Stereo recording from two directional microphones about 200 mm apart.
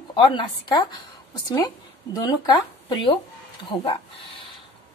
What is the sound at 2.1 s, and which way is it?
A woman's voice, 20° left (ahead or behind).